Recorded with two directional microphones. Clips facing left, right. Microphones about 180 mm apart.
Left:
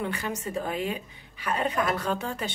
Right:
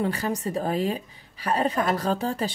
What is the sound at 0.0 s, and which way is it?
A woman's voice, 35° right (ahead or behind).